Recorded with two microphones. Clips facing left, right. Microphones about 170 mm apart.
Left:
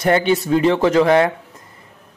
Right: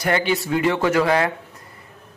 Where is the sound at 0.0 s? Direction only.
25° left (ahead or behind).